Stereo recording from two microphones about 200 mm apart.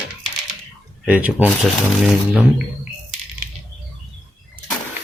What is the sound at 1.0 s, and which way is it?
Speech, 5° right (ahead or behind).